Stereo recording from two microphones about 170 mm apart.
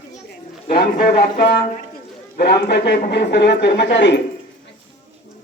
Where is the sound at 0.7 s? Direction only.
65° left (ahead or behind); by 4.2 s 90° left.